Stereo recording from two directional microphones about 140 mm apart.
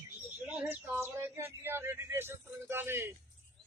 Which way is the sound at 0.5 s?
15° right (ahead or behind).